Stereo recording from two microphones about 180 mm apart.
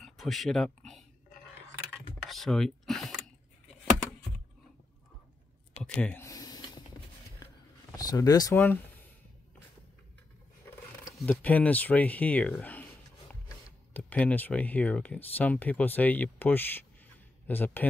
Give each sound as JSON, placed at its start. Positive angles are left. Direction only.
{"t": 0.0, "sound": "a sound", "side_deg": 0}
{"t": 1.9, "sound": "mechanisms", "side_deg": 0}
{"t": 5.9, "sound": "speech", "side_deg": 5}
{"t": 6.2, "sound": "mechanisms", "side_deg": 20}
{"t": 7.9, "sound": "speech", "side_deg": 20}
{"t": 11.1, "sound": "speech", "side_deg": 10}